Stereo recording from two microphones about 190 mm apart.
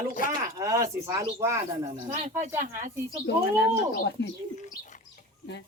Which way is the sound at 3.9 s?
60° left (ahead or behind).